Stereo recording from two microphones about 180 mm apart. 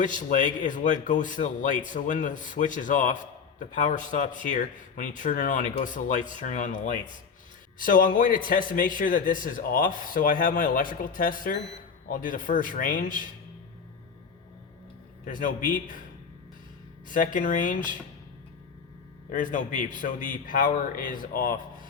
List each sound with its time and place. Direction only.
0.0 s a man's voice: 45° left (ahead or behind)
15.2 s a man's voice: 50° left (ahead or behind)
17.2 s a man's voice: 45° left (ahead or behind)
19.3 s a man's voice: 45° left (ahead or behind)